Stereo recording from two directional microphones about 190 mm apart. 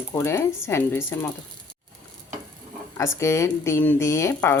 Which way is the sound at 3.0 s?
15° left (ahead or behind).